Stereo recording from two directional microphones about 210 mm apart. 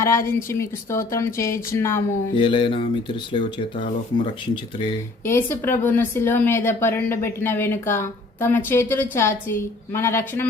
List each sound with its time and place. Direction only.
0.0 s a woman's voice: 15° left (ahead or behind)
2.3 s speech: 25° left (ahead or behind)
5.2 s a woman's voice: 10° left (ahead or behind)